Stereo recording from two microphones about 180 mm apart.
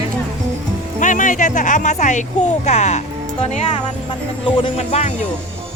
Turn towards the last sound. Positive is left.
turn(degrees=40)  # may be behind; listen again after turning